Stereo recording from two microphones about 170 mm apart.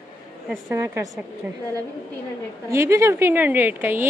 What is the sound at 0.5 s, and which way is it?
Speech, 15° right (ahead or behind).